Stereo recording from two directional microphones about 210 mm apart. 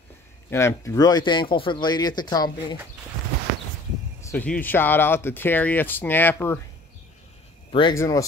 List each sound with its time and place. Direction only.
0.5 s speech: 10° left (ahead or behind)
4.2 s speech: 10° left (ahead or behind)
7.9 s speech: 15° left (ahead or behind)